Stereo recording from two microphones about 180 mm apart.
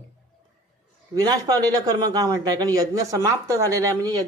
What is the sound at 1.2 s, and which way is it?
A man's voice, 20° right (ahead or behind).